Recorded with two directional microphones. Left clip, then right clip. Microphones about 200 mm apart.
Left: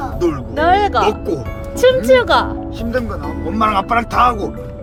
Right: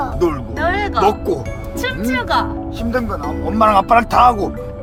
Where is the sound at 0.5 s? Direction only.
30° left (ahead or behind).